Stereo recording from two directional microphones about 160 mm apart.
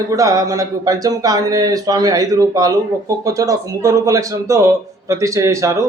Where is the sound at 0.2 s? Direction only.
20° right (ahead or behind).